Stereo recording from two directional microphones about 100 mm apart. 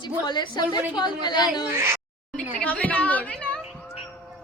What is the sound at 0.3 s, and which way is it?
A woman's voice, 50° left (ahead or behind).